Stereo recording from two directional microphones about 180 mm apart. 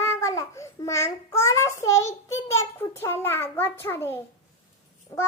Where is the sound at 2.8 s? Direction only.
15° left (ahead or behind).